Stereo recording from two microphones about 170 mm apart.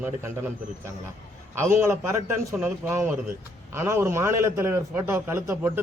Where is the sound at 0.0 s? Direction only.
15° right (ahead or behind).